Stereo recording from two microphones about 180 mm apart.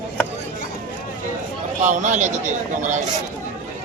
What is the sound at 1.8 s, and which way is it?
Speech, 40° right (ahead or behind).